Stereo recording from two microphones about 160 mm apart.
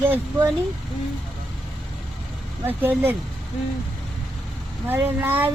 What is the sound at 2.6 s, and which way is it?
Speech, 10° right (ahead or behind).